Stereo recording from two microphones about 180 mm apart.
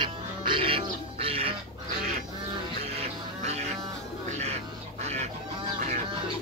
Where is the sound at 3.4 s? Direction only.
35° right (ahead or behind).